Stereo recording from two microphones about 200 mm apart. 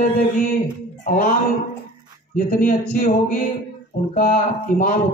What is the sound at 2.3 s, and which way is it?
Speech, 45° left (ahead or behind).